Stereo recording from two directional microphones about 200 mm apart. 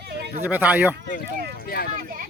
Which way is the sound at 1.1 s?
45° left (ahead or behind).